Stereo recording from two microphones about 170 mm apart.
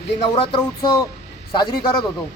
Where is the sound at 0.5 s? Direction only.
20° left (ahead or behind).